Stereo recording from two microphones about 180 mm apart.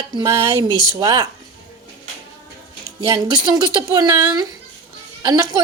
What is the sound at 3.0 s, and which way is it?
Speech, 20° right (ahead or behind).